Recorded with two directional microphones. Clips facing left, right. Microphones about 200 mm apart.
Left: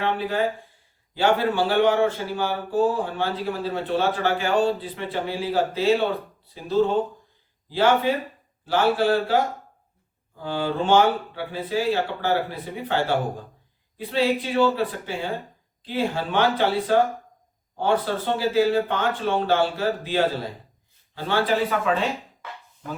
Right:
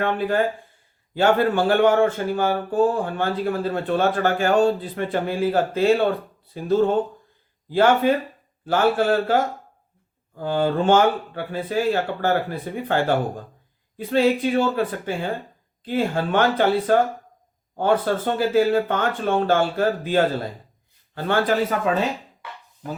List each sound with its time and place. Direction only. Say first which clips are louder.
0.0 s speech: right 3 dB; 50° right (ahead or behind)